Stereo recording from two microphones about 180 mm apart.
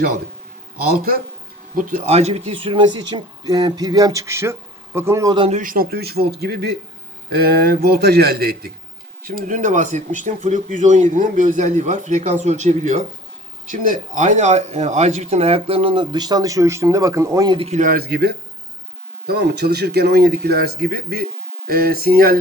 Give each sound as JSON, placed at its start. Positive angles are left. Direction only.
{"t": 0.8, "sound": "a man's voice", "side_deg": -55}
{"t": 5.5, "sound": "speech", "side_deg": -45}
{"t": 17.7, "sound": "speech", "side_deg": -50}